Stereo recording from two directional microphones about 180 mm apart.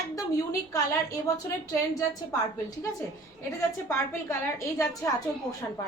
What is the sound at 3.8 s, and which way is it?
Speech, 15° left (ahead or behind).